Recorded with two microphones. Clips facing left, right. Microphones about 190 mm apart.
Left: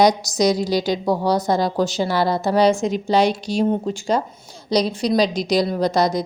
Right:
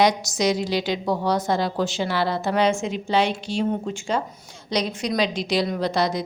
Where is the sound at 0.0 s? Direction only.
35° left (ahead or behind).